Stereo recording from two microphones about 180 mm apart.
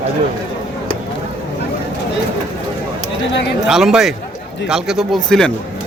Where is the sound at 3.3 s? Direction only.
70° left (ahead or behind).